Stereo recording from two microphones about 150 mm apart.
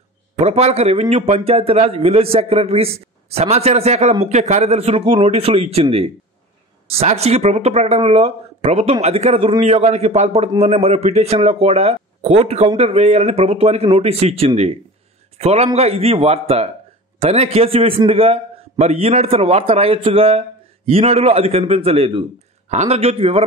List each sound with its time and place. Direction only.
0.4 s a man's voice: 45° right (ahead or behind)